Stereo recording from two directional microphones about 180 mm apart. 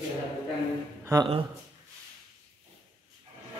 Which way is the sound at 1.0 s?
20° right (ahead or behind).